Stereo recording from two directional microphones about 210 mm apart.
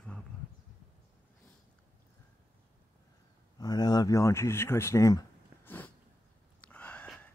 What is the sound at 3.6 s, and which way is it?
Speech, 20° left (ahead or behind).